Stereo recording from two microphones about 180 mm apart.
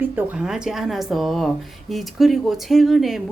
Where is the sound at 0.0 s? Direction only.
10° right (ahead or behind).